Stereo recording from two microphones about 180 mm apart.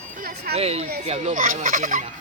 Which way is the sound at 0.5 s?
35° right (ahead or behind).